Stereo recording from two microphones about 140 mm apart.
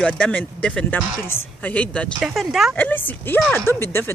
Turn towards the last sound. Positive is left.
turn(degrees=15)  # may be behind; listen again after turning